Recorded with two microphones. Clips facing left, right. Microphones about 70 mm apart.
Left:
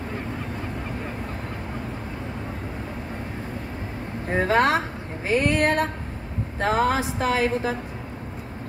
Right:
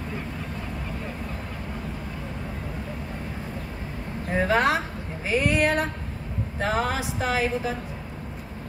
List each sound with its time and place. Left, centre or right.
4.4 s a woman's voice: left